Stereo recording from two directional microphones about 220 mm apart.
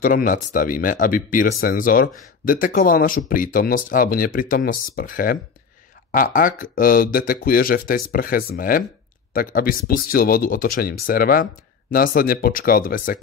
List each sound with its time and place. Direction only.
0.0 s speech: 40° left (ahead or behind)